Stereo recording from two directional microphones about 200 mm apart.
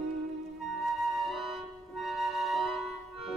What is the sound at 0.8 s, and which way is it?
Music, centre (ahead or behind).